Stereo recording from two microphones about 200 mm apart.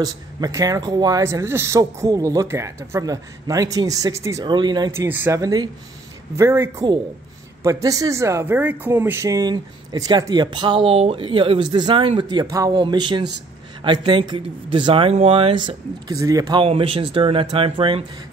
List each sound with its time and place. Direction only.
0.0 s speech: 15° right (ahead or behind)
5.0 s speech: 10° right (ahead or behind); by 18.0 s 25° right (ahead or behind)